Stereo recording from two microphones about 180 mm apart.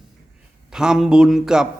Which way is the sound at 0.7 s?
5° right (ahead or behind).